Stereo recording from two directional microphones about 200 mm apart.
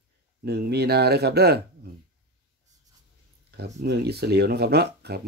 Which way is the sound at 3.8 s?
55° right (ahead or behind).